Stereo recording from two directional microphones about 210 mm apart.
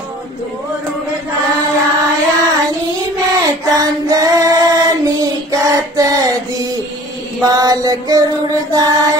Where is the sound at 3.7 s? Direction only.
15° right (ahead or behind).